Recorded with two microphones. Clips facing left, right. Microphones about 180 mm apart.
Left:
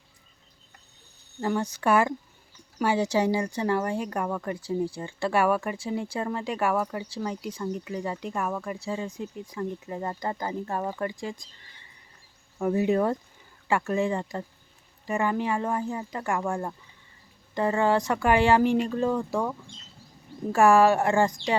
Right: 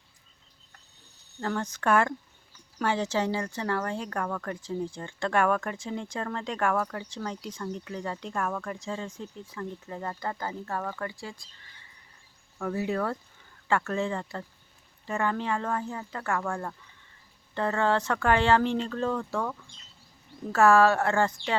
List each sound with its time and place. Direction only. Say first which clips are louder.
1.4 s speech: left 4 dB; 10° left (ahead or behind)
12.5 s speech: left 6 dB; 20° left (ahead or behind)